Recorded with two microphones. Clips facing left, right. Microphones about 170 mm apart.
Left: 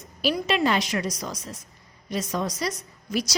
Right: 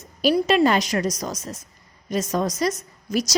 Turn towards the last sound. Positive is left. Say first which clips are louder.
# right 4 dB
turn(degrees=-45)  # may be behind; listen again after turning